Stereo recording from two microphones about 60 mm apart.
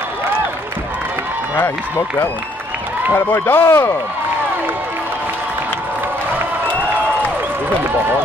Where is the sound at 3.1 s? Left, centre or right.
Left.